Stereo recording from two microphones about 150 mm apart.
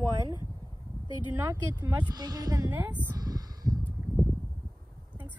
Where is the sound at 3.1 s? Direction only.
25° right (ahead or behind).